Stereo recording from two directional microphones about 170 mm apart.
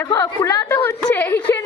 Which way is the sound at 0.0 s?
20° left (ahead or behind).